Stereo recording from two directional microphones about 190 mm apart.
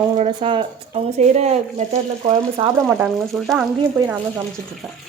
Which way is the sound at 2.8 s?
Centre (ahead or behind).